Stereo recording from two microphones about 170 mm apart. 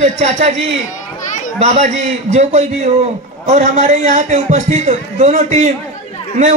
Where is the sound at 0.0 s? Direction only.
40° right (ahead or behind).